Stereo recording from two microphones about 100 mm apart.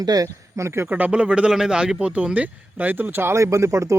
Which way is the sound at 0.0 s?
40° right (ahead or behind).